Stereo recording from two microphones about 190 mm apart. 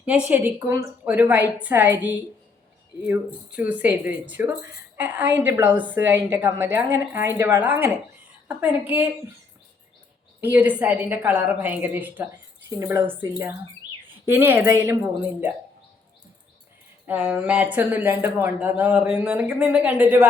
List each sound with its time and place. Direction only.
0.0 s speech: 5° right (ahead or behind)
10.4 s speech: 10° right (ahead or behind)
17.1 s speech: 10° right (ahead or behind)